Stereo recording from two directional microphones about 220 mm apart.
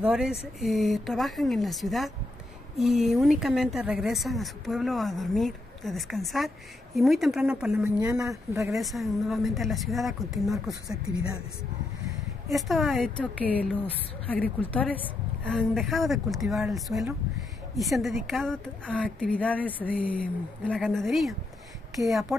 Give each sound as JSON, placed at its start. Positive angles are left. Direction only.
{"t": 0.0, "sound": "speech", "side_deg": 0}
{"t": 8.7, "sound": "speech", "side_deg": 0}
{"t": 12.4, "sound": "a woman's voice", "side_deg": 0}